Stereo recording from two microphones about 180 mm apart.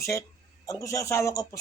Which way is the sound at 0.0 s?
15° left (ahead or behind).